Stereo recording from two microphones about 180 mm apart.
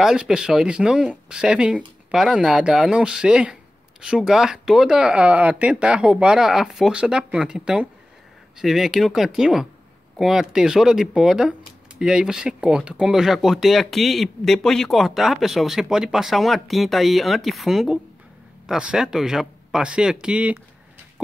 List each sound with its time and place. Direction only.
0.0 s speech: 5° right (ahead or behind)